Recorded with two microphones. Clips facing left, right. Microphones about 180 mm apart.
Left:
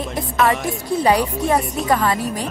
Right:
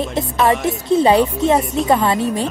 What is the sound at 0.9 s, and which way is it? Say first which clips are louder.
Speech: right 4 dB; 25° right (ahead or behind).